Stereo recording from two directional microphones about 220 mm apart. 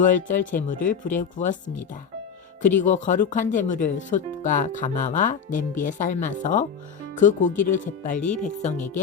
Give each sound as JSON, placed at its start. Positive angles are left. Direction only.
{"t": 0.0, "sound": "speech", "side_deg": 35}